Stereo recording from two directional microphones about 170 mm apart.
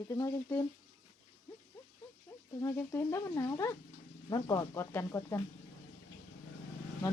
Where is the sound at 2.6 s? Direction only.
15° left (ahead or behind).